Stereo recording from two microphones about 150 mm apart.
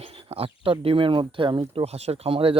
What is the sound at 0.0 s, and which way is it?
Speech, 40° right (ahead or behind).